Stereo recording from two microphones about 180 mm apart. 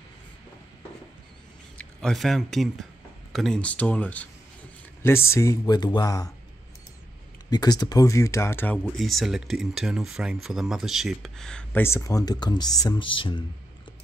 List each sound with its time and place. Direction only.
1.8 s speech: 5° left (ahead or behind); by 6.3 s 20° left (ahead or behind)
7.4 s speech: 20° left (ahead or behind)
8.8 s speech: centre (ahead or behind); by 13.4 s 30° left (ahead or behind)